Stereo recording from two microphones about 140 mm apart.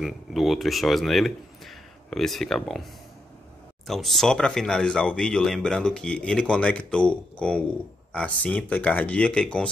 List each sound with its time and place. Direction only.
0.0 s speech: centre (ahead or behind)